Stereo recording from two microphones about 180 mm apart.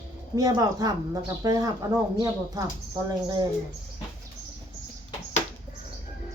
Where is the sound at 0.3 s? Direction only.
20° right (ahead or behind).